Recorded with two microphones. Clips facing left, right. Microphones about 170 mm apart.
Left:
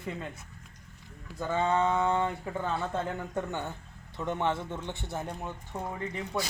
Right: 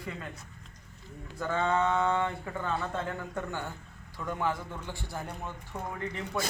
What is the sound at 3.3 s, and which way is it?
A man's voice, 20° left (ahead or behind).